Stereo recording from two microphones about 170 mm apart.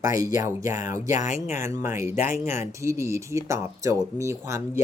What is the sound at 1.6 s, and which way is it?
Speech, 15° right (ahead or behind).